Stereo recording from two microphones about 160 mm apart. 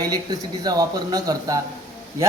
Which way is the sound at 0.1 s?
25° right (ahead or behind).